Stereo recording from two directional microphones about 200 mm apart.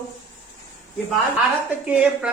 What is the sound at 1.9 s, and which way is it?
Speech, 5° right (ahead or behind).